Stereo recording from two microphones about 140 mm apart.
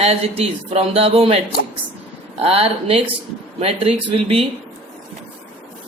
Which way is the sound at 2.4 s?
45° right (ahead or behind).